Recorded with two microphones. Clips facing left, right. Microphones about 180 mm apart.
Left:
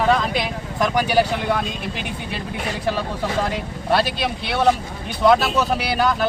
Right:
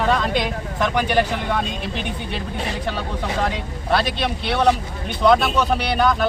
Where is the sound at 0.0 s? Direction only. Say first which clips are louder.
Left 1 dB; 5° left (ahead or behind).